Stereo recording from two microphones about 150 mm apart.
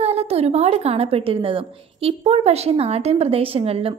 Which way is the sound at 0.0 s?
45° right (ahead or behind).